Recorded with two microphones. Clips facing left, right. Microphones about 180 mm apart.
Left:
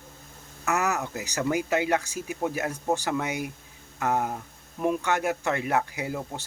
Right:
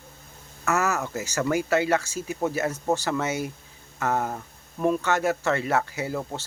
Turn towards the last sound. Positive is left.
turn(degrees=15)  # may be behind; listen again after turning